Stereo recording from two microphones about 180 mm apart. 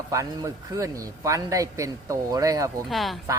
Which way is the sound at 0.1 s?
15° right (ahead or behind).